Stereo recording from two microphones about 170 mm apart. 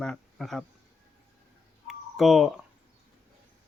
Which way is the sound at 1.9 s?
Centre (ahead or behind).